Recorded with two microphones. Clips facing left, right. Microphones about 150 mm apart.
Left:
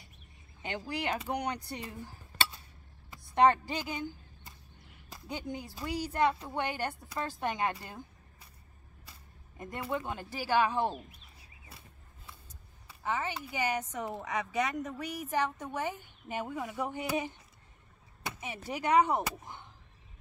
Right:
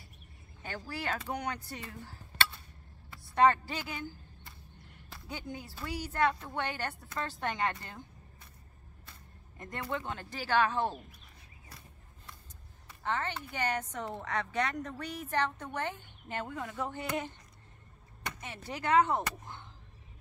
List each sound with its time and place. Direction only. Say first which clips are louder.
0.6 s speech: left 4 dB; 20° left (ahead or behind)
1.7 s a sound: left 3 dB; 15° left (ahead or behind)
5.1 s speech: left 3 dB; 15° left (ahead or behind)
9.6 s speech: left 2 dB; 10° left (ahead or behind)
12.8 s speech: even; 10° left (ahead or behind)